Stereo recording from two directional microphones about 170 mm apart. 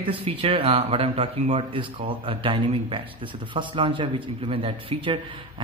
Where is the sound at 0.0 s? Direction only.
35° right (ahead or behind).